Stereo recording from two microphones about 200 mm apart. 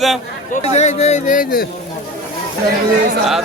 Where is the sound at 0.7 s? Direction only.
35° left (ahead or behind).